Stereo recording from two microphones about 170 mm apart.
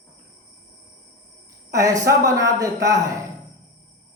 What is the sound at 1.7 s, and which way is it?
A man's voice, 20° right (ahead or behind).